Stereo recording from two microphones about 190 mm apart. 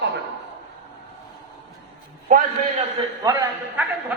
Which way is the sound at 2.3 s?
45° right (ahead or behind).